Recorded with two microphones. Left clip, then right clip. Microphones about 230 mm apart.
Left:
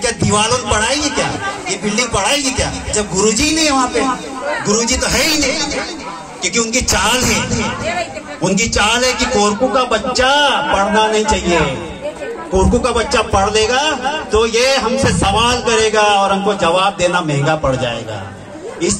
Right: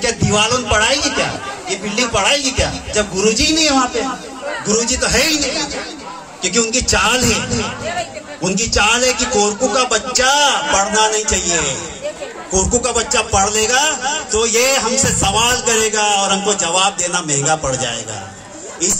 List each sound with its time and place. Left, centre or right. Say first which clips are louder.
0.0 s chatter: even; right
4.6 s a man's voice: even; right
12.5 s a man's voice: left 3 dB; right